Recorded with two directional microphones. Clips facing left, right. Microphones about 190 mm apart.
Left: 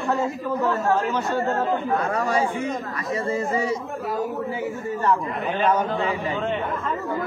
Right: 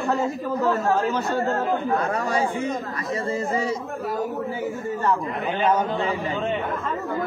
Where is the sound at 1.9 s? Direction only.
35° right (ahead or behind).